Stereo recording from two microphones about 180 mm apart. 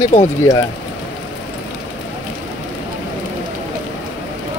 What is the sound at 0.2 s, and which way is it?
Speech, 15° left (ahead or behind).